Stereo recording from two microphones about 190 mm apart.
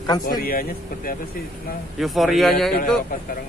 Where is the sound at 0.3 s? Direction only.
50° left (ahead or behind).